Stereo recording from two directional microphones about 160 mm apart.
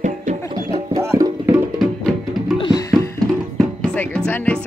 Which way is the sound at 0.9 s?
20° right (ahead or behind).